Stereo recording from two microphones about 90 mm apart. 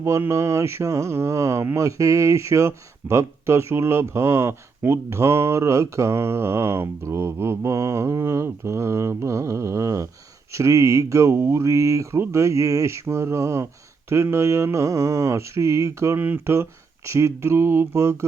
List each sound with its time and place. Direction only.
0.0 s speech: 30° right (ahead or behind)